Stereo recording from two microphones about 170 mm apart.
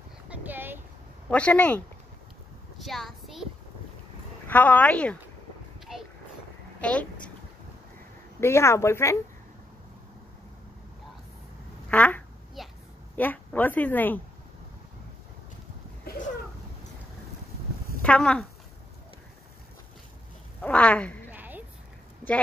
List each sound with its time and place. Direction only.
0.3 s boat: 10° right (ahead or behind)
1.3 s speech: 10° left (ahead or behind)
2.8 s a sound: centre (ahead or behind)
4.5 s speech: 10° left (ahead or behind)
6.8 s a woman's voice: 5° left (ahead or behind)
8.4 s speech: 15° left (ahead or behind)
11.9 s speech: 10° left (ahead or behind)
12.6 s a sound: centre (ahead or behind)
13.1 s speech: 10° left (ahead or behind)
16.0 s a sound: 65° left (ahead or behind)
18.0 s speech: 5° left (ahead or behind)
20.6 s speech: 10° left (ahead or behind)
21.3 s a sound: 10° right (ahead or behind)